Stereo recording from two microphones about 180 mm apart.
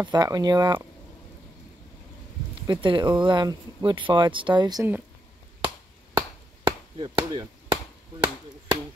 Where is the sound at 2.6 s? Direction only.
25° right (ahead or behind).